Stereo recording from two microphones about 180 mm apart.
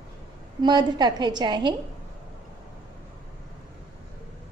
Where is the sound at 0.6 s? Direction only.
25° right (ahead or behind).